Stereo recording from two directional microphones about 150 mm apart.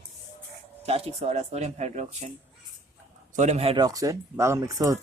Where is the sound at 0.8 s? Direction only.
40° right (ahead or behind).